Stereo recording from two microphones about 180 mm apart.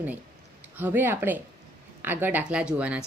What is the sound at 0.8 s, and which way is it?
A woman's voice, 10° right (ahead or behind).